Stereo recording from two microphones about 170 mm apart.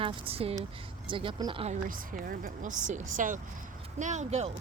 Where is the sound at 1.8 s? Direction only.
55° right (ahead or behind).